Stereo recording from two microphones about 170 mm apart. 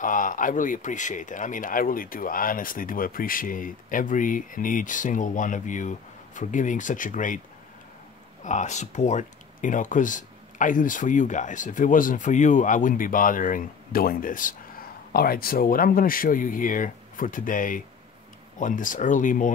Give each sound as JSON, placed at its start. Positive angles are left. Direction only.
{"t": 0.0, "sound": "speech", "side_deg": 50}
{"t": 8.5, "sound": "speech", "side_deg": 45}